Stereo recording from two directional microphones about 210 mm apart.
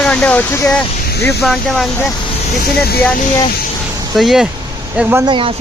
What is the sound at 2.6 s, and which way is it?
Speech, 50° left (ahead or behind).